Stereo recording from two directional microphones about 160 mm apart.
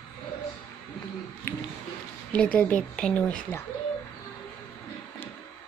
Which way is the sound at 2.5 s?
10° left (ahead or behind).